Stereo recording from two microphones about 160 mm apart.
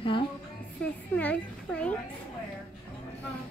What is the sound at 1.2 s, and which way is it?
Speech, 10° left (ahead or behind).